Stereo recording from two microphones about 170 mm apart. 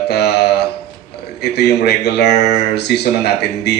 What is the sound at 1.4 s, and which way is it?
Mantra, 75° left (ahead or behind).